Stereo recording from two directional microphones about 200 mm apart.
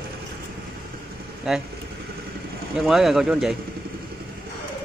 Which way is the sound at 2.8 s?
Centre (ahead or behind).